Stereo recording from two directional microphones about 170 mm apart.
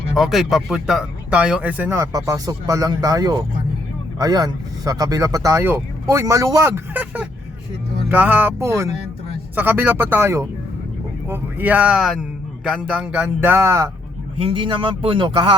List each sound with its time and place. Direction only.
0.1 s speech: centre (ahead or behind); by 13.9 s 15° right (ahead or behind)
14.3 s speech: 30° right (ahead or behind)